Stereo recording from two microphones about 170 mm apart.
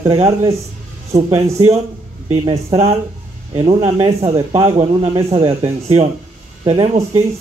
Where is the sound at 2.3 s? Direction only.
35° right (ahead or behind).